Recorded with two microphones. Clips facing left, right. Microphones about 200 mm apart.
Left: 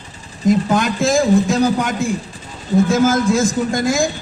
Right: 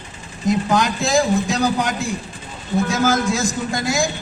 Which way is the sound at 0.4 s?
50° left (ahead or behind).